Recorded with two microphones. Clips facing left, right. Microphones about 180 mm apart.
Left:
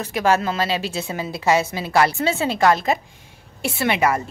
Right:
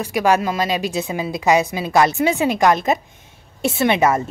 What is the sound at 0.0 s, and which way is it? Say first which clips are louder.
A woman's voice: right 2 dB; 15° right (ahead or behind).